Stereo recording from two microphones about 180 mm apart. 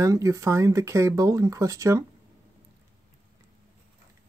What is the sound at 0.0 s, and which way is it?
Speech, 15° right (ahead or behind).